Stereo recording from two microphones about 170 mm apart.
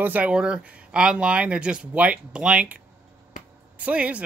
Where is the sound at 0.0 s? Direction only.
10° right (ahead or behind).